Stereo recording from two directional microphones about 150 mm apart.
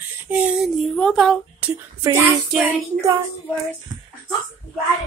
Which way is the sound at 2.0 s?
15° right (ahead or behind).